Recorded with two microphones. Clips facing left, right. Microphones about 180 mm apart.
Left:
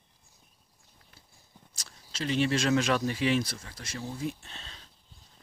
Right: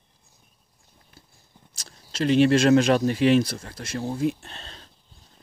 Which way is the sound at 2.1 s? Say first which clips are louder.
Right 9 dB; 75° right (ahead or behind).